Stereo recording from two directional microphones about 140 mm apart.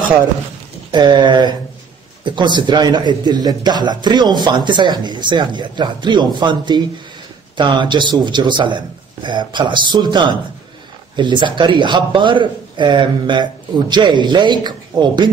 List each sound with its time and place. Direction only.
0.9 s a man's voice: 30° right (ahead or behind)